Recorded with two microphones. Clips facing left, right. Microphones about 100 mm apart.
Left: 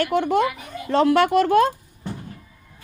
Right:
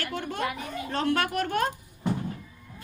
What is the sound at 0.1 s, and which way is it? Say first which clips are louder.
A woman's voice: left 11 dB; 90° left.